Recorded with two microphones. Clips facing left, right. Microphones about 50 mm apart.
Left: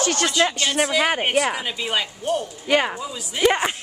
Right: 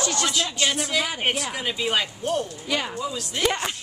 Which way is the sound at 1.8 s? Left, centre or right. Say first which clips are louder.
Even; centre.